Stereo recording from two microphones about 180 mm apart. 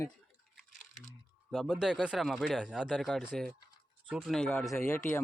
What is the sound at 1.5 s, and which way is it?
Speech, centre (ahead or behind).